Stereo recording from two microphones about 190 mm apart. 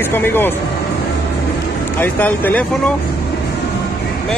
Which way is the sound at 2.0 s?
10° left (ahead or behind).